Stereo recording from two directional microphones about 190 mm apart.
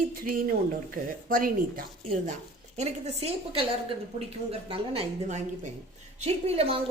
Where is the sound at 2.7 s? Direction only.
35° right (ahead or behind).